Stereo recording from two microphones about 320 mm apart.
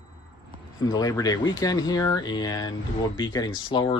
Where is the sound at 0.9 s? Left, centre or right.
Centre.